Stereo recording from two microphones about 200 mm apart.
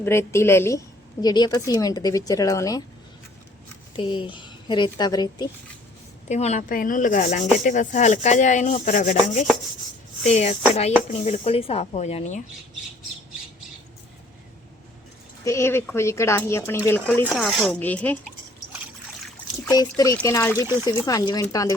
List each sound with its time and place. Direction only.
0.0 s speech: 10° left (ahead or behind)
3.9 s a woman's voice: 25° left (ahead or behind)
6.2 s rub: 35° left (ahead or behind)
15.4 s speech: 15° left (ahead or behind)
17.2 s speech: centre (ahead or behind)
19.6 s a woman's voice: 20° left (ahead or behind)